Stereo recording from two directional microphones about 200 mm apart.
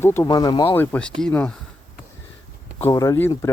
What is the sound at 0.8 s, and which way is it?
Speech, 5° left (ahead or behind).